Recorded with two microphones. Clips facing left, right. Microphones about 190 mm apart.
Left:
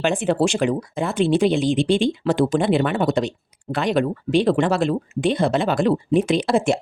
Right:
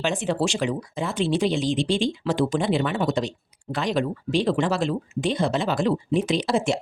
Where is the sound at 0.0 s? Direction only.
55° left (ahead or behind).